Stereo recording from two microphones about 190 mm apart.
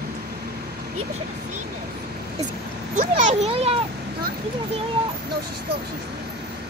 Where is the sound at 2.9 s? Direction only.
40° right (ahead or behind).